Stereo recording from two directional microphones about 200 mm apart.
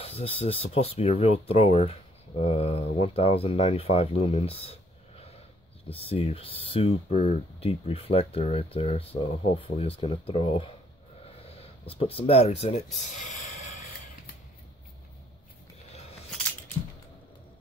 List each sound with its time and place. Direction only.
0.0 s speech: 30° left (ahead or behind)
12.0 s speech: 30° left (ahead or behind)